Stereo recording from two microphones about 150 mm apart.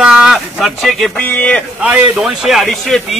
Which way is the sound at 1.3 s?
10° left (ahead or behind).